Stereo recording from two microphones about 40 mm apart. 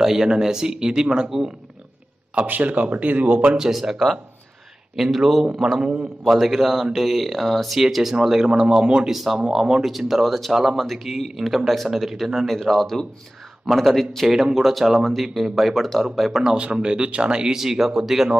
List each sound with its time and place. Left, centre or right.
0.0 s speech: centre
2.4 s speech: right
3.7 s speech: centre
6.2 s speech: centre
9.1 s speech: centre
10.5 s speech: centre
16.3 s speech: centre
16.7 s speech: right
17.6 s speech: centre